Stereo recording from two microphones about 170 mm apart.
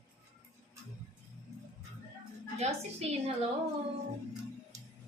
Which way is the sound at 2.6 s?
40° right (ahead or behind).